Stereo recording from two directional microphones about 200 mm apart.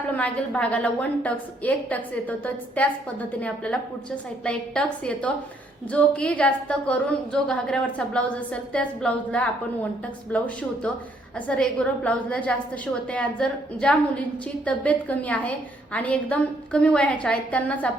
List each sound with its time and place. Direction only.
0.1 s a woman's voice: 5° left (ahead or behind)